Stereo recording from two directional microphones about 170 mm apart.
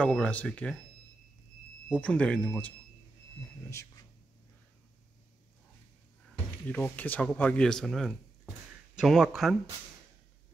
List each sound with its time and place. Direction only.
0.0 s speech: 5° left (ahead or behind)
2.0 s speech: 5° left (ahead or behind)
6.7 s a man's voice: 10° left (ahead or behind)